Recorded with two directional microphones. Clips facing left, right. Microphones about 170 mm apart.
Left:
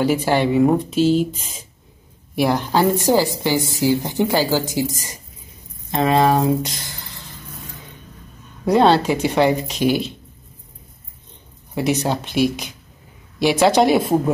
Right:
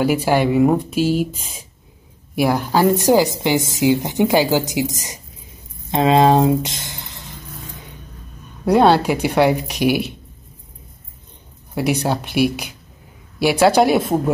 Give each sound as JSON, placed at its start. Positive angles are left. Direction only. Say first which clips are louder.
{"t": 0.0, "sound": "a woman's voice", "louder": "right 1 dB", "side_deg": -10}
{"t": 8.6, "sound": "a woman's voice", "louder": "right 1 dB", "side_deg": -10}
{"t": 11.7, "sound": "a woman's voice", "louder": "right 1 dB", "side_deg": -10}